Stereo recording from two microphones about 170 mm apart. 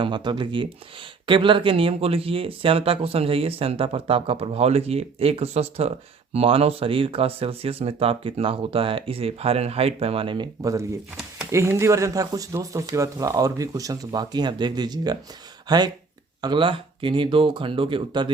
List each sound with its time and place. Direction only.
0.0 s speech: 25° right (ahead or behind)